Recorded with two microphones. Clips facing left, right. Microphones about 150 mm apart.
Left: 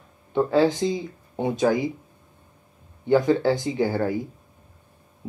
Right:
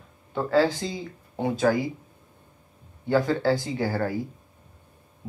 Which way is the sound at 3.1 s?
20° left (ahead or behind).